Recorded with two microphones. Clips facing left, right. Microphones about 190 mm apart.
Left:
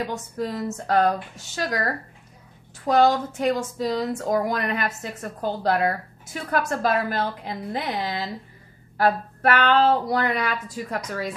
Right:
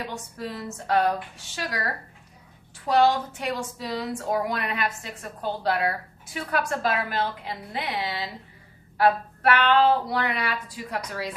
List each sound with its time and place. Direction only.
0.1 s speech: 40° left (ahead or behind)
2.9 s speech: 45° left (ahead or behind)